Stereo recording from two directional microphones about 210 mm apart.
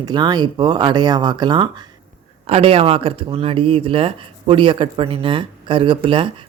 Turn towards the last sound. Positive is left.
turn(degrees=-25)  # may be behind; listen again after turning